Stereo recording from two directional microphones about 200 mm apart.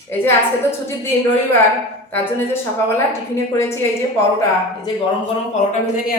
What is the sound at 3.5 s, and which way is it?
Speech, 15° left (ahead or behind).